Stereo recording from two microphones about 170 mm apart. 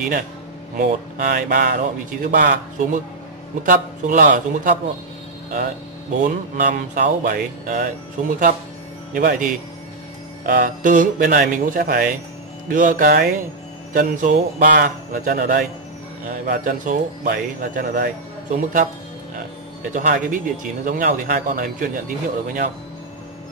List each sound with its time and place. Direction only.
0.7 s speech: 50° right (ahead or behind)
6.2 s speech: 50° right (ahead or behind)
19.9 s speech: 50° right (ahead or behind)